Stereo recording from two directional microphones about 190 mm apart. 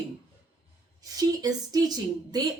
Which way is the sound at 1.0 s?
20° right (ahead or behind).